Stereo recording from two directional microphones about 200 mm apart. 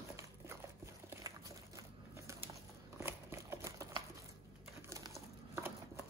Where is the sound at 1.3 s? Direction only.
15° right (ahead or behind).